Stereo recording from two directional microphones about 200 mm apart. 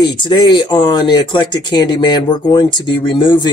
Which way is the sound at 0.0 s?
25° left (ahead or behind).